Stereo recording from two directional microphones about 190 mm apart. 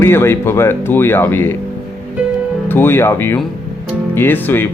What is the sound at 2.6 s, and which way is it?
Speech, 10° left (ahead or behind).